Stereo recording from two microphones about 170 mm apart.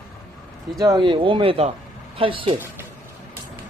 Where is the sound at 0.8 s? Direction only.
25° right (ahead or behind).